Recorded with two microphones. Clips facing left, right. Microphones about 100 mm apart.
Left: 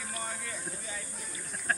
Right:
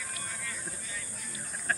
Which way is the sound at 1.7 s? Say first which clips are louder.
Left 1 dB; centre (ahead or behind).